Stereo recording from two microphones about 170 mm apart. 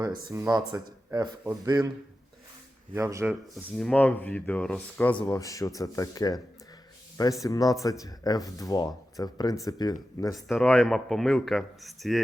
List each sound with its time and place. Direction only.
0.3 s speech: 25° right (ahead or behind)
2.9 s speech: 15° right (ahead or behind)
3.5 s speech: 5° left (ahead or behind)
5.2 s speech: 20° left (ahead or behind)
7.4 s speech: 20° left (ahead or behind)
10.3 s speech: centre (ahead or behind)